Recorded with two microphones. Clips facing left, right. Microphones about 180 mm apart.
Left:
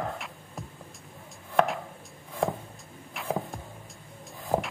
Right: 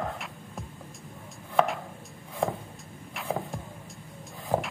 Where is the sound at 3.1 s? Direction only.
Centre (ahead or behind).